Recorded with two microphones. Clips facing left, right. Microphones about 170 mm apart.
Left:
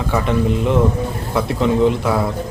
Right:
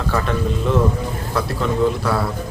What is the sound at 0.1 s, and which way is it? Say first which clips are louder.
A man's voice: left 4 dB; 15° left (ahead or behind).